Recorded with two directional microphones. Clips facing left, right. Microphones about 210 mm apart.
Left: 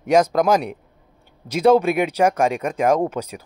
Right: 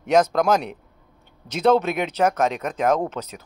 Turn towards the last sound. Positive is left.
turn(degrees=10)  # may be behind; listen again after turning